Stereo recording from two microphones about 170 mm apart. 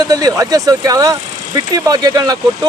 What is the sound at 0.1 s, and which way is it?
Speech, 20° right (ahead or behind).